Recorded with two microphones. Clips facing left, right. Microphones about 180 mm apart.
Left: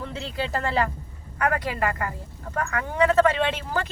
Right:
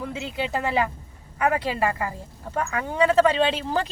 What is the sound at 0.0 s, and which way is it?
Speech, 15° right (ahead or behind).